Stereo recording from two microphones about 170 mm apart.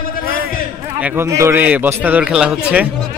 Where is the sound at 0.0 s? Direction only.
55° left (ahead or behind).